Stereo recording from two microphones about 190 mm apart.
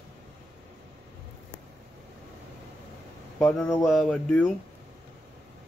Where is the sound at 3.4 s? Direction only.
10° left (ahead or behind).